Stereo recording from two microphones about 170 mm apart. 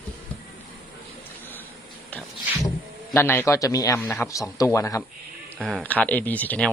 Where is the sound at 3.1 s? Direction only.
10° left (ahead or behind).